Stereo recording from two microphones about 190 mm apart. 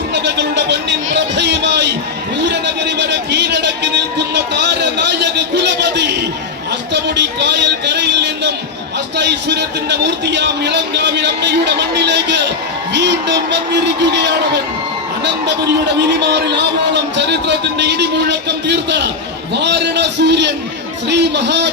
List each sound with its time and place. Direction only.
0.1 s a sound: 65° right (ahead or behind)
6.9 s speech: 65° right (ahead or behind)
16.0 s speech: 65° right (ahead or behind)